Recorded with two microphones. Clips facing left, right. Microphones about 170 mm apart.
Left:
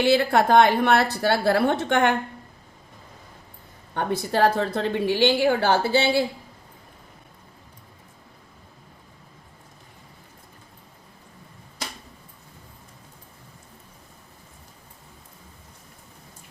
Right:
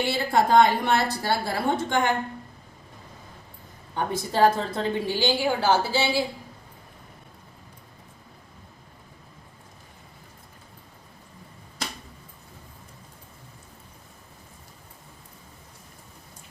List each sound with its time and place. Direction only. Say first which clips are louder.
0.0 s a woman's voice: left 4 dB; 70° left (ahead or behind)
3.9 s a woman's voice: left 2 dB; 65° left (ahead or behind)